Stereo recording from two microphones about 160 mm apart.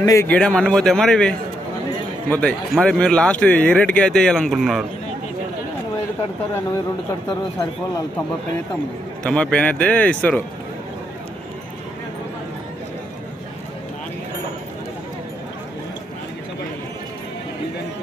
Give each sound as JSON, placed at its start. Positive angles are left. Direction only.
{"t": 0.0, "sound": "a man's voice", "side_deg": 20}
{"t": 0.3, "sound": "speech", "side_deg": 5}
{"t": 9.2, "sound": "speech", "side_deg": 5}